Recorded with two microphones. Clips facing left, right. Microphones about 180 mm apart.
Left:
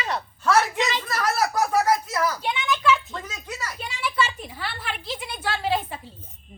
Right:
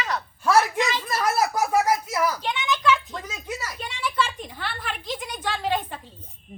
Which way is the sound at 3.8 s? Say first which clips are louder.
Left 1 dB; 5° left (ahead or behind).